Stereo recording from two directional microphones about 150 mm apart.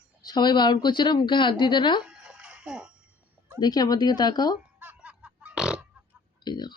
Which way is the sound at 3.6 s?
25° left (ahead or behind).